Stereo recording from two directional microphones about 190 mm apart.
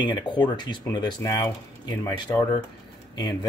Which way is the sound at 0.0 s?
25° left (ahead or behind).